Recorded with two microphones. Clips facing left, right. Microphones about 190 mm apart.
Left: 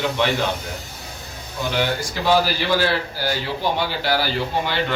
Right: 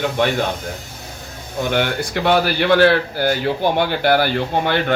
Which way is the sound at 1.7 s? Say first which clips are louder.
Right 3 dB; 60° right (ahead or behind).